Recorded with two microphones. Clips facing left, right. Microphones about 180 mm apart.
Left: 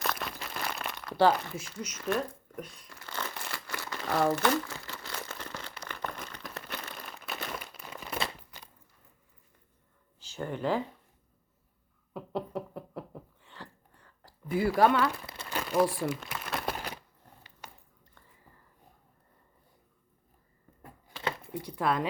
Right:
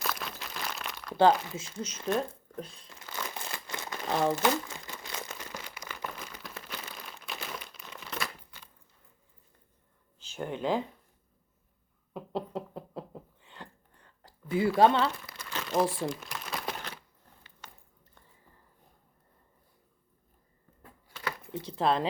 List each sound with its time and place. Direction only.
0.0 s a sound: centre (ahead or behind)
1.5 s speech: 25° right (ahead or behind)
3.3 s crumpling: 20° right (ahead or behind); by 8.2 s 10° left (ahead or behind)
10.3 s speech: 15° right (ahead or behind)
12.1 s knock: 20° right (ahead or behind)
14.8 s speech: 25° right (ahead or behind)
15.5 s crumpling: 10° left (ahead or behind)
17.6 s a sound: 15° left (ahead or behind)
21.4 s speech: 25° right (ahead or behind)